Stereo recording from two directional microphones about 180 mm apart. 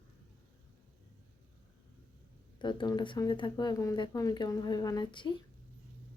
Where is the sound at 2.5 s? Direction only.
25° left (ahead or behind).